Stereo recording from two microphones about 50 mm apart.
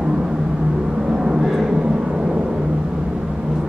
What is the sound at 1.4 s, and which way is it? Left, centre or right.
Vehicle, centre.